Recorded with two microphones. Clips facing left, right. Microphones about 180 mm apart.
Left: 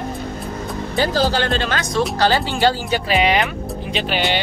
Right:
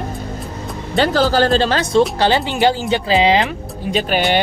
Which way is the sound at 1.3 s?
40° right (ahead or behind).